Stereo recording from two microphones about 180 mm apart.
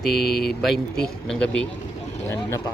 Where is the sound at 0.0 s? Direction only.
Centre (ahead or behind).